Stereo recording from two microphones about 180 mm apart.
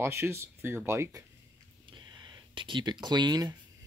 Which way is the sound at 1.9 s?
25° right (ahead or behind).